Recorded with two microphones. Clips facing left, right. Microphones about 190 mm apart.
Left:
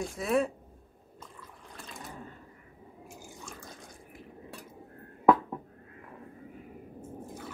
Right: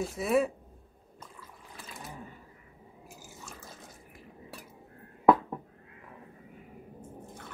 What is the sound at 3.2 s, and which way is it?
Drip, 5° right (ahead or behind).